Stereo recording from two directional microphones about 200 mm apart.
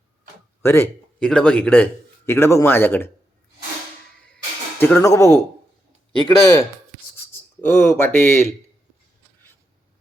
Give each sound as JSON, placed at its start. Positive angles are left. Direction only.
{"t": 0.6, "sound": "a man's voice", "side_deg": 15}
{"t": 4.8, "sound": "a man's voice", "side_deg": 10}